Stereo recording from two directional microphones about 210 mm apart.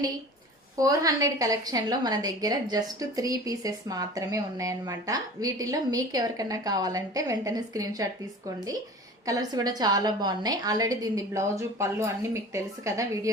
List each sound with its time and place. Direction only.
0.8 s a woman's voice: 15° right (ahead or behind)
9.2 s a woman's voice: 15° right (ahead or behind)